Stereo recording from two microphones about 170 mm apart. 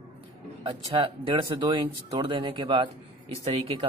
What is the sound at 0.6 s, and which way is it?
A man's voice, 30° right (ahead or behind).